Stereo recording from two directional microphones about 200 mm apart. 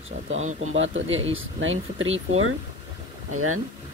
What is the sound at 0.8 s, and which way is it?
Speech, 75° right (ahead or behind).